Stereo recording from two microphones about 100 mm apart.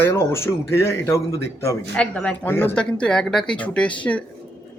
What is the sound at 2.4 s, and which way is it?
Speech, 20° left (ahead or behind).